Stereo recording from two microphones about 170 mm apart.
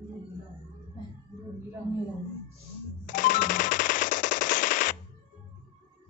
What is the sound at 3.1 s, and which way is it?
Machine gun, 50° left (ahead or behind).